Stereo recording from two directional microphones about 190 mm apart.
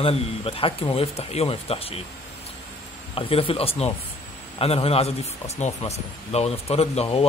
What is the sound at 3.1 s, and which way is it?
A man's voice, 30° left (ahead or behind).